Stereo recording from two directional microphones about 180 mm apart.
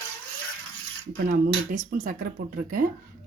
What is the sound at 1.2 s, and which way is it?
Speech, 45° right (ahead or behind).